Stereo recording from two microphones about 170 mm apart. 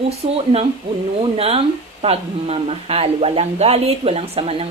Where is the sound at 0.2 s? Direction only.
35° right (ahead or behind).